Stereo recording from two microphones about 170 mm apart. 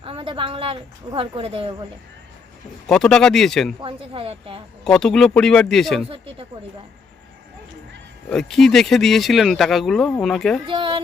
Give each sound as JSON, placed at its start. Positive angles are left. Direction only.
{"t": 0.0, "sound": "speech", "side_deg": -30}
{"t": 2.8, "sound": "speech", "side_deg": 5}
{"t": 3.8, "sound": "speech", "side_deg": -30}
{"t": 4.8, "sound": "speech", "side_deg": 0}
{"t": 8.3, "sound": "speech", "side_deg": 0}
{"t": 10.7, "sound": "speech", "side_deg": -30}